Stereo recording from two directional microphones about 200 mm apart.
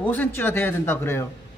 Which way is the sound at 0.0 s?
10° left (ahead or behind).